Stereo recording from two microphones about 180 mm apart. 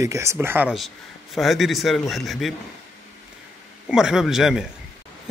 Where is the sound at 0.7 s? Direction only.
Centre (ahead or behind).